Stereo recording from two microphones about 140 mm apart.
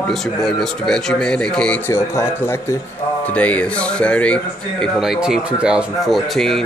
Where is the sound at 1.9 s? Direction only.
20° left (ahead or behind).